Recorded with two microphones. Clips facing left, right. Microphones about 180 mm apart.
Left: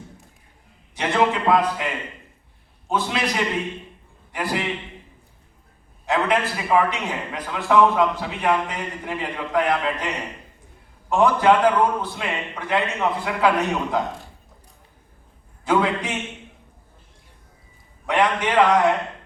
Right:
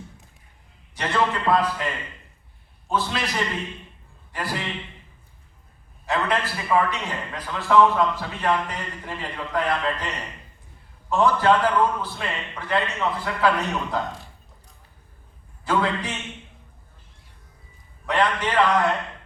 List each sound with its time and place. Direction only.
0.9 s a man's voice: 15° left (ahead or behind)
2.9 s a man's voice: 15° left (ahead or behind)
6.1 s a man's voice: 20° left (ahead or behind)
15.6 s a man's voice: 15° left (ahead or behind)
18.0 s a man's voice: 15° left (ahead or behind)